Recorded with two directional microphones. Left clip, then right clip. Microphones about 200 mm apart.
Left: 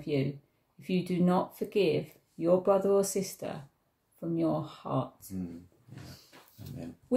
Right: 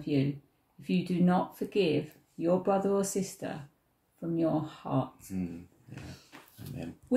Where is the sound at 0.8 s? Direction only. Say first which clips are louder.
Even; 20° left (ahead or behind).